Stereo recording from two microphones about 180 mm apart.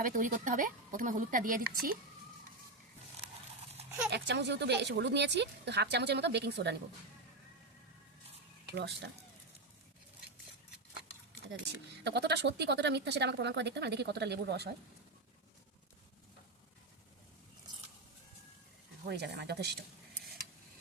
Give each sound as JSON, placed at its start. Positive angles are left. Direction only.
{"t": 0.0, "sound": "a woman's voice", "side_deg": -50}
{"t": 3.8, "sound": "a sound", "side_deg": -35}
{"t": 4.1, "sound": "speech", "side_deg": -70}
{"t": 12.0, "sound": "speech", "side_deg": -70}
{"t": 19.0, "sound": "speech", "side_deg": -65}